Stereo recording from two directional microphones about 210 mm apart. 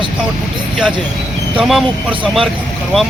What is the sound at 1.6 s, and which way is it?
Speech, 5° right (ahead or behind).